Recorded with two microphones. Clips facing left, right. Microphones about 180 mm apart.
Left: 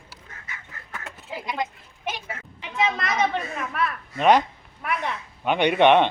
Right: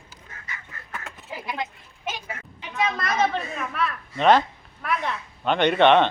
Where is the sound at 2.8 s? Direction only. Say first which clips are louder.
Even; 20° left (ahead or behind).